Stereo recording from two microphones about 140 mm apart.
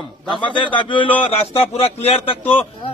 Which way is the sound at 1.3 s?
45° left (ahead or behind).